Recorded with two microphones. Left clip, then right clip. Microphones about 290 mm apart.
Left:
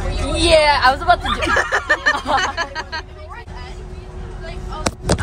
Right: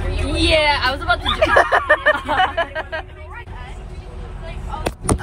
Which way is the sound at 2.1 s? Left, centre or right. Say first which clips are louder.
Left 2 dB; left.